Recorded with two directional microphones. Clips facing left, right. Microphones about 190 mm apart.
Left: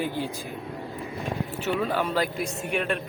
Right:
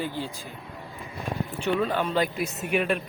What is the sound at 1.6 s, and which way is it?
Speech, 5° left (ahead or behind).